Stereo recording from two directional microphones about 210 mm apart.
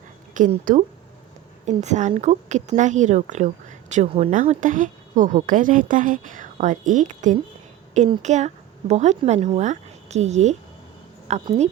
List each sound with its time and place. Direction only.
0.3 s a woman's voice: 40° right (ahead or behind)